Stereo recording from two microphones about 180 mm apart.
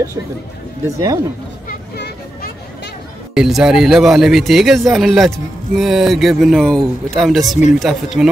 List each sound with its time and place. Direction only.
0.8 s speech: 15° right (ahead or behind)
1.7 s a sound: 60° left (ahead or behind)
3.3 s speech: centre (ahead or behind)